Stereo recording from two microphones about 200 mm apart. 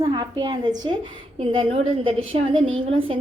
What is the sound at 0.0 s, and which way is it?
A woman's voice, 20° right (ahead or behind).